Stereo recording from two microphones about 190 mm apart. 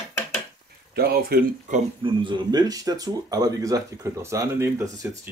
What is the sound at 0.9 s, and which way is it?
Speech, 55° right (ahead or behind).